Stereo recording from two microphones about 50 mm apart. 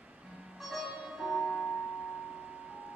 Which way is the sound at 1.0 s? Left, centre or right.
Centre.